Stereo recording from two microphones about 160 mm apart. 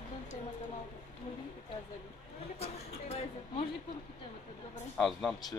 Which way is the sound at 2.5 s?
40° left (ahead or behind).